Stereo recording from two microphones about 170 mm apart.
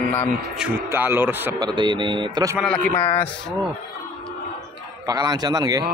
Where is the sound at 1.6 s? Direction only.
25° right (ahead or behind).